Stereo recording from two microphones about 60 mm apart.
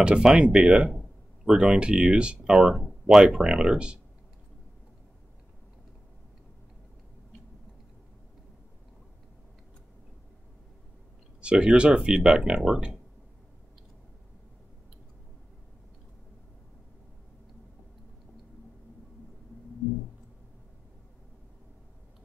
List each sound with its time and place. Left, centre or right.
0.0 s speech: centre
2.6 s speech: centre
11.4 s speech: centre